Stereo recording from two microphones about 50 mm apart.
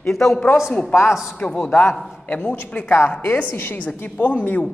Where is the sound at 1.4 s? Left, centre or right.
Left.